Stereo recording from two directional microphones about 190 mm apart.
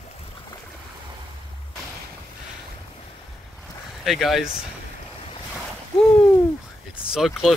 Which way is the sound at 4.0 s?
Centre (ahead or behind).